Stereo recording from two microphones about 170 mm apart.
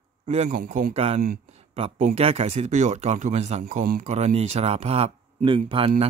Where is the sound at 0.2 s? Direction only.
40° right (ahead or behind).